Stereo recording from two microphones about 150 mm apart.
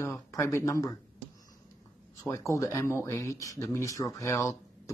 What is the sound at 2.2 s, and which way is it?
Speech, 20° left (ahead or behind).